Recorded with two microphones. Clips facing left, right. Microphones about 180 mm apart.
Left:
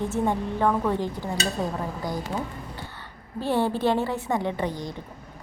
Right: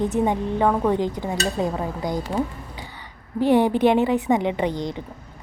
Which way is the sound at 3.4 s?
15° right (ahead or behind).